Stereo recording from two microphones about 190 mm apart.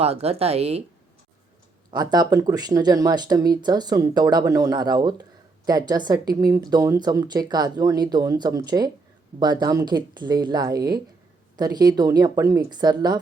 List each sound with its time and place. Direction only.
0.0 s speech: 30° right (ahead or behind)
1.9 s speech: 20° right (ahead or behind)